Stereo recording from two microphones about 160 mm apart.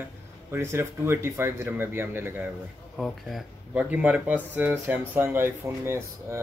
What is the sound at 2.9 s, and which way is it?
Speech, centre (ahead or behind).